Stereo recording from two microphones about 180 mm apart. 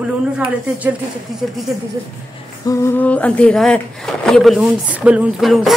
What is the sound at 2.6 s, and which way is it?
A woman's voice, 20° left (ahead or behind).